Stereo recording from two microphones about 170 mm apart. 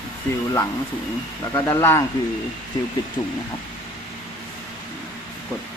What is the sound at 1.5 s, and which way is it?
Speech, 15° left (ahead or behind).